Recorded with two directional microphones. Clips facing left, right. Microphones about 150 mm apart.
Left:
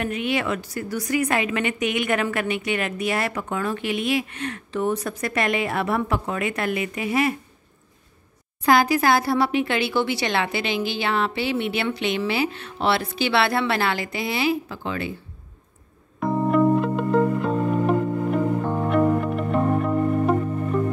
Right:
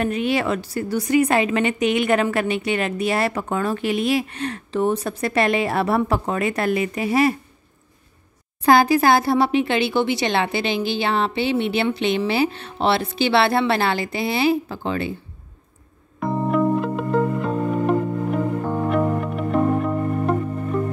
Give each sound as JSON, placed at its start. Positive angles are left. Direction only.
{"t": 0.0, "sound": "a woman's voice", "side_deg": -35}
{"t": 8.6, "sound": "speech", "side_deg": -30}
{"t": 16.2, "sound": "music", "side_deg": 0}